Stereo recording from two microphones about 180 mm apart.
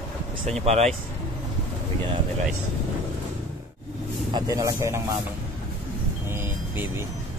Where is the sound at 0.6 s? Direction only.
35° right (ahead or behind).